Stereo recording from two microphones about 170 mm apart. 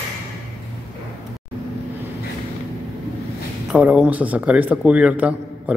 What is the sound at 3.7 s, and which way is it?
A man's voice, 10° right (ahead or behind).